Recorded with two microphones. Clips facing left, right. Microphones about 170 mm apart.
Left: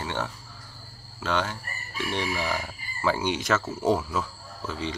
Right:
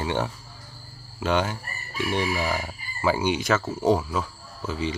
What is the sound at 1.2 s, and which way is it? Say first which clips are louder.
Chicken: right 4 dB; 15° right (ahead or behind).